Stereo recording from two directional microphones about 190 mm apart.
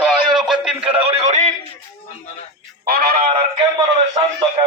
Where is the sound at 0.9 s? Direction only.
30° right (ahead or behind).